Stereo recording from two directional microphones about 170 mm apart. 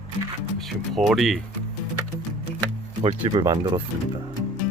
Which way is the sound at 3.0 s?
35° right (ahead or behind).